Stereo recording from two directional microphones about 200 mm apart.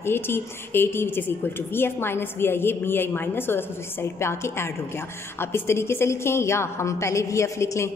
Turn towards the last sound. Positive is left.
turn(degrees=15)  # may be behind; listen again after turning